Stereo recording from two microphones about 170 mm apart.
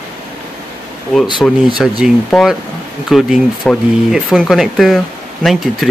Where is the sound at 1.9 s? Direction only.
Centre (ahead or behind).